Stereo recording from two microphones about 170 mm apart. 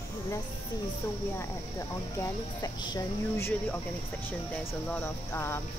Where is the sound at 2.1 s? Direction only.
20° left (ahead or behind).